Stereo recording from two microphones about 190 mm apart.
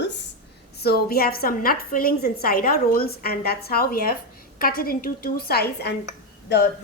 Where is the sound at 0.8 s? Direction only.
55° left (ahead or behind).